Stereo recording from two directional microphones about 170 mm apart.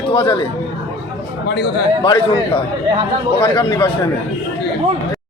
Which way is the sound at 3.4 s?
25° left (ahead or behind).